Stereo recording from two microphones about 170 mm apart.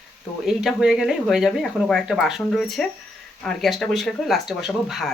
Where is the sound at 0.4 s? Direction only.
5° right (ahead or behind).